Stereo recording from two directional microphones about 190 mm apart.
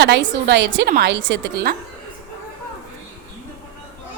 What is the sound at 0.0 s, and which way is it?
A woman's voice, 65° right (ahead or behind).